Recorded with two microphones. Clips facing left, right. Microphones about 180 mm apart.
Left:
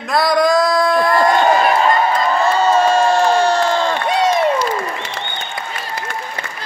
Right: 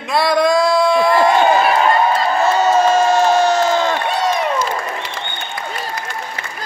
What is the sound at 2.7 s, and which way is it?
Crowd, centre (ahead or behind).